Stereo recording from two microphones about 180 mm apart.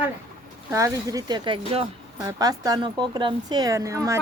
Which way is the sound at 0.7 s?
20° right (ahead or behind).